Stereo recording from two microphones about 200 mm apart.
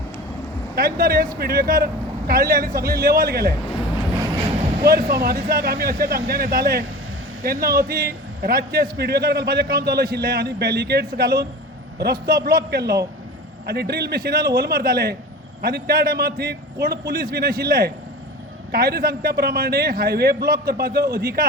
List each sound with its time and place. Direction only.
0.8 s a man's voice: 50° right (ahead or behind)
4.9 s a man's voice: 50° right (ahead or behind)